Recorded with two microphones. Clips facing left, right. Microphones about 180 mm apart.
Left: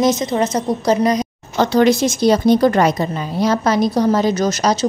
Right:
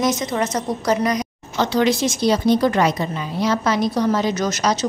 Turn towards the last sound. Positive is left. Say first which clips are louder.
# left 4 dB
turn(degrees=35)  # may be behind; listen again after turning